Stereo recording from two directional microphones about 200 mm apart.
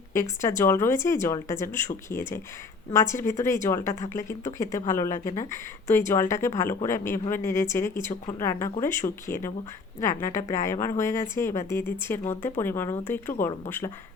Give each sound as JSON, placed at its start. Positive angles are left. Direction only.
{"t": 0.1, "sound": "speech", "side_deg": 15}
{"t": 5.0, "sound": "speech", "side_deg": 40}
{"t": 5.4, "sound": "speech", "side_deg": 15}
{"t": 10.7, "sound": "speech", "side_deg": 15}